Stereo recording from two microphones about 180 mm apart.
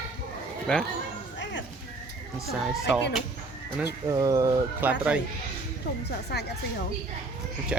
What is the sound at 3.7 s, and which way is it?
Speech, 15° right (ahead or behind).